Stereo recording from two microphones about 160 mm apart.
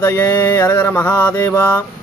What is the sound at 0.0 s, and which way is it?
Speech, 10° left (ahead or behind).